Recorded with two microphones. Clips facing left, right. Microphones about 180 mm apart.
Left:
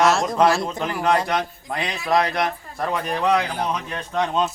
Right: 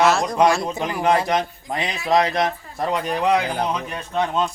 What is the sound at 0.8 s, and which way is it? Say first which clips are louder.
Speech: right 1 dB; 15° right (ahead or behind).